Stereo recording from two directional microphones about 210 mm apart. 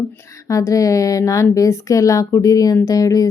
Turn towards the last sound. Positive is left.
turn(degrees=15)  # may be behind; listen again after turning